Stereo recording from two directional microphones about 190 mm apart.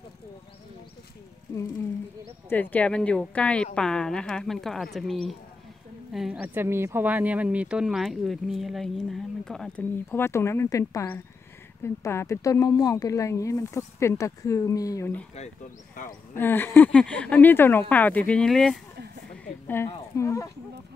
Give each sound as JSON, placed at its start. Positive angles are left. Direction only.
{"t": 2.5, "sound": "speech", "side_deg": 10}
{"t": 16.3, "sound": "speech", "side_deg": 10}